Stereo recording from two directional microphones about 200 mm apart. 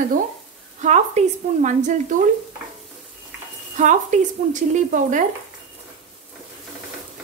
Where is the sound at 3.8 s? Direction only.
40° right (ahead or behind).